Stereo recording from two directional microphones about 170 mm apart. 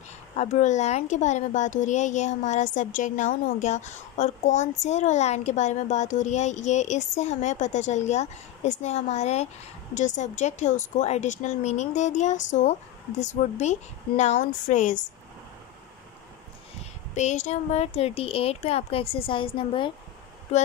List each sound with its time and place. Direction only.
0.4 s speech: 45° left (ahead or behind)
17.1 s speech: 45° left (ahead or behind)